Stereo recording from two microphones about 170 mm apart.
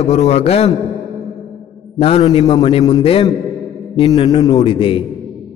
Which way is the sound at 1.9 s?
35° left (ahead or behind).